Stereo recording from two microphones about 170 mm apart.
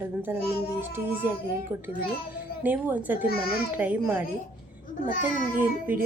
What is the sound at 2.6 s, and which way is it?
A woman's voice, 10° right (ahead or behind).